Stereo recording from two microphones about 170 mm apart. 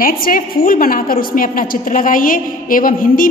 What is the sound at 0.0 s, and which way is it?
A woman's voice, 60° left (ahead or behind).